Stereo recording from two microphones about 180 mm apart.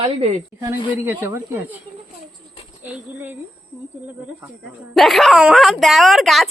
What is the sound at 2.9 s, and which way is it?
Speech, 10° right (ahead or behind).